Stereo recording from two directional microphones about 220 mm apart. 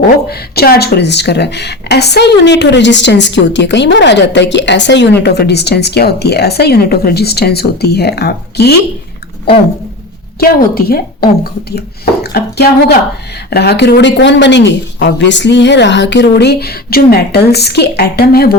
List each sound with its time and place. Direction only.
0.3 s speech: 45° left (ahead or behind)
10.4 s speech: 45° left (ahead or behind)